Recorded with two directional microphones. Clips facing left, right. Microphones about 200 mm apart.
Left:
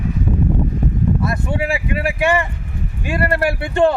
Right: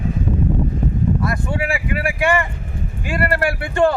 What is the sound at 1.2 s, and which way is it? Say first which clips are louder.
Speech: left 1 dB; 25° left (ahead or behind).